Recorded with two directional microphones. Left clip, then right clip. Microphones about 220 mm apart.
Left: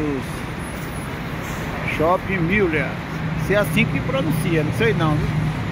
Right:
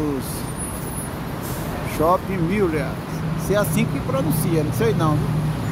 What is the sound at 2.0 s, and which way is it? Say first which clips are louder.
Speech: right 1 dB; 5° left (ahead or behind).